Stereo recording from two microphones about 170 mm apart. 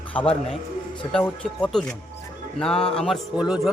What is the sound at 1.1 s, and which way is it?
A man's voice, 5° left (ahead or behind).